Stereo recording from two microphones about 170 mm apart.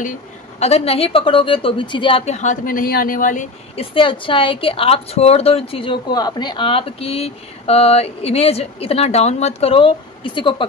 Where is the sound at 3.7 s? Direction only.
35° left (ahead or behind).